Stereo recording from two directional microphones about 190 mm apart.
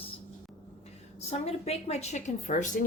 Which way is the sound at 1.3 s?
35° left (ahead or behind).